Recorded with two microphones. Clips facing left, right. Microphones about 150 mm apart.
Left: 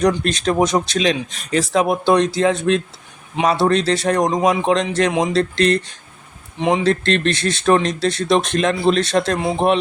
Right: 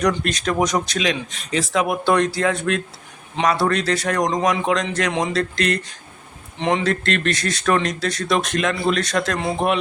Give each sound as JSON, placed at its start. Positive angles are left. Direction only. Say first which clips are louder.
{"t": 0.3, "sound": "speech", "louder": "left 3 dB", "side_deg": 30}
{"t": 2.0, "sound": "speech", "louder": "left 3 dB", "side_deg": 20}
{"t": 6.6, "sound": "speech", "louder": "left 3 dB", "side_deg": 15}
{"t": 6.8, "sound": "speech", "louder": "left 4 dB", "side_deg": 30}